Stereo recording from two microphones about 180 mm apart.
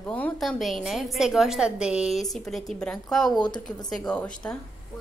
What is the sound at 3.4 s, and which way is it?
Speech, 25° left (ahead or behind).